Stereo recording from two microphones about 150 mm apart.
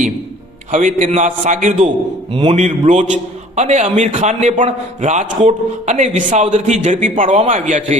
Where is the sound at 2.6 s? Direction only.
50° right (ahead or behind).